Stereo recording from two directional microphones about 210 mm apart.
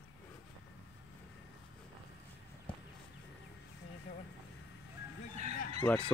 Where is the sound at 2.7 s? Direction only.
25° left (ahead or behind).